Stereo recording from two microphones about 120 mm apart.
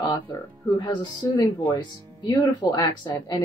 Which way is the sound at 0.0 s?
35° left (ahead or behind).